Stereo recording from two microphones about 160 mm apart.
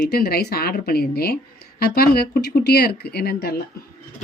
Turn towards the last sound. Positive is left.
turn(degrees=75)  # may be behind; listen again after turning